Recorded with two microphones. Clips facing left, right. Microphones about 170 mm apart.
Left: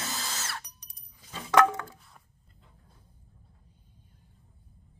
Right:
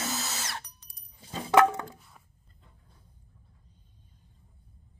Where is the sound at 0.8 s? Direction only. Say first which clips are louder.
Left 1 dB; 15° left (ahead or behind).